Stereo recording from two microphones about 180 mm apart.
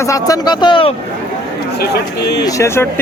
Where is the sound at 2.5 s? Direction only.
15° left (ahead or behind).